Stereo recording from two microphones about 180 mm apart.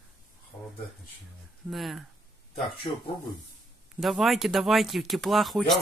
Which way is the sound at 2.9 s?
30° left (ahead or behind).